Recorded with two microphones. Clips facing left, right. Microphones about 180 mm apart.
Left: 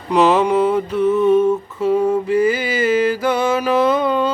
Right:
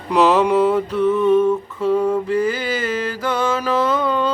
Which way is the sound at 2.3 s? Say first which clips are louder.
Left 3 dB; 10° left (ahead or behind).